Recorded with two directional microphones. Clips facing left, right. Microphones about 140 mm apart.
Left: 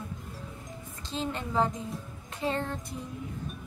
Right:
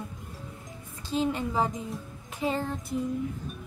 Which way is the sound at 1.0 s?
10° right (ahead or behind).